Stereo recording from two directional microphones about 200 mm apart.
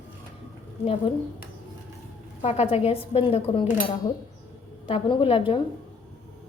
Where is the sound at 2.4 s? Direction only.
30° left (ahead or behind).